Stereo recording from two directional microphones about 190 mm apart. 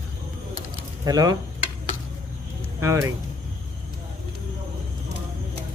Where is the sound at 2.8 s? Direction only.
15° right (ahead or behind).